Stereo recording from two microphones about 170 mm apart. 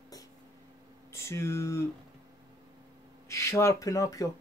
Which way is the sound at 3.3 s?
15° left (ahead or behind).